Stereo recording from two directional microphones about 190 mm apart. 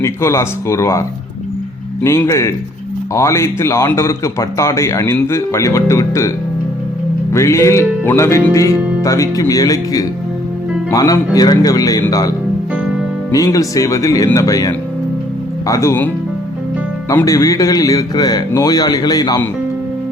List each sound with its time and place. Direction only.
0.0 s speech: 15° left (ahead or behind)
7.3 s a man's voice: 15° left (ahead or behind)
13.3 s speech: 15° left (ahead or behind)
17.1 s a man's voice: 15° left (ahead or behind)